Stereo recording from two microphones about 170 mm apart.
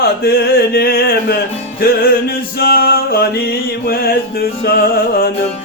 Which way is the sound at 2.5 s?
60° left (ahead or behind).